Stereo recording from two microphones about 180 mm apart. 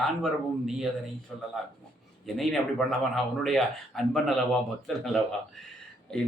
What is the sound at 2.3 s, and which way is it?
Speech, centre (ahead or behind).